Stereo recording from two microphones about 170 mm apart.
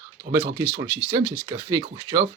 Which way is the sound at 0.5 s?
15° right (ahead or behind).